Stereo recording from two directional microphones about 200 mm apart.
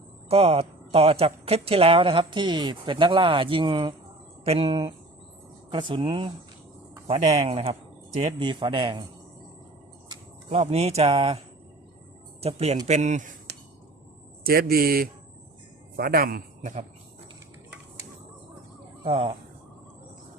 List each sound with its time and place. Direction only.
0.3 s a man's voice: 30° right (ahead or behind)
8.4 s speech: 25° right (ahead or behind)
10.5 s speech: 30° right (ahead or behind)
12.4 s speech: 30° right (ahead or behind)
14.4 s a man's voice: 50° right (ahead or behind)
19.0 s speech: 30° right (ahead or behind)